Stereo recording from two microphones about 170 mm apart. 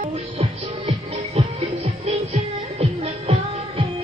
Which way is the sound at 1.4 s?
35° right (ahead or behind).